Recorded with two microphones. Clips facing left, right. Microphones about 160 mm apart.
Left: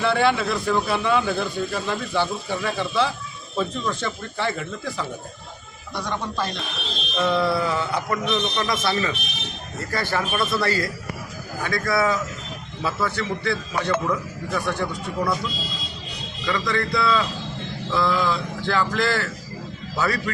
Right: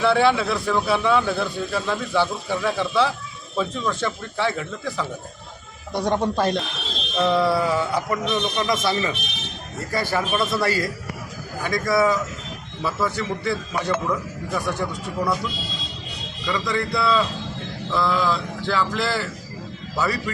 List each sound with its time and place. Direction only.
0.0 s speech: centre (ahead or behind)
5.9 s a man's voice: 50° right (ahead or behind)
7.2 s speech: 10° right (ahead or behind)
16.5 s speech: 10° right (ahead or behind)
17.9 s speech: centre (ahead or behind)